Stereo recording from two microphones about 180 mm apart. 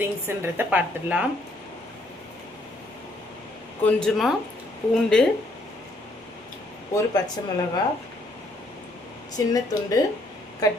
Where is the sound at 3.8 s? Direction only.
5° left (ahead or behind).